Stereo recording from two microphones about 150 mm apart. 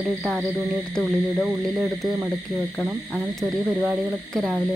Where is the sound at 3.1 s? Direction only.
Centre (ahead or behind).